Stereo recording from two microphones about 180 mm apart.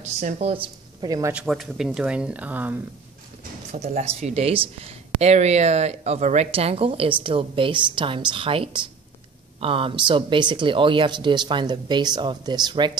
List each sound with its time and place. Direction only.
0.2 s speech: 40° right (ahead or behind)
1.0 s speech: 20° right (ahead or behind)
1.3 s speech: 5° right (ahead or behind)
3.7 s speech: 35° right (ahead or behind)